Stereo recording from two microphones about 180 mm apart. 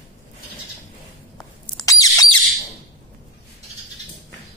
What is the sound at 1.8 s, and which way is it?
Squeal, 20° left (ahead or behind).